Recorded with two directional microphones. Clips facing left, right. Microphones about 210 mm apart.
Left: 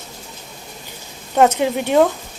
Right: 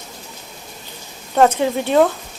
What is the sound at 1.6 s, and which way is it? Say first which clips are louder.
Speech: even; 15° left (ahead or behind).